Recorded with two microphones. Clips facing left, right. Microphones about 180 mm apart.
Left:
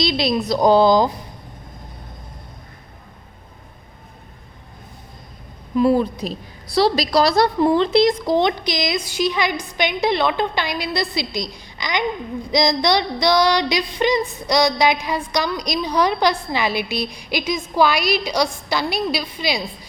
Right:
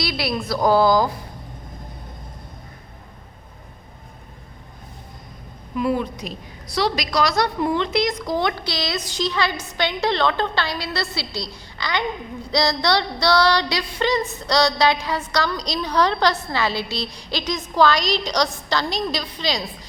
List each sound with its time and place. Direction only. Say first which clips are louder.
0.0 s a woman's voice: left 5 dB; 20° left (ahead or behind)
5.7 s a woman's voice: left 6 dB; 35° left (ahead or behind); by 19.6 s 10° left (ahead or behind)